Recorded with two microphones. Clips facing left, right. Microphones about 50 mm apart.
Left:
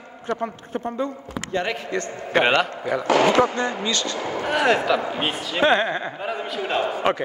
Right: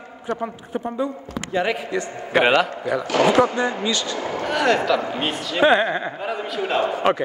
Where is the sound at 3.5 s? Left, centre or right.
Centre.